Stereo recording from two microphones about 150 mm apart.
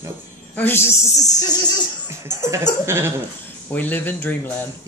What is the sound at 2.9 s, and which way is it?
Speech, 15° right (ahead or behind).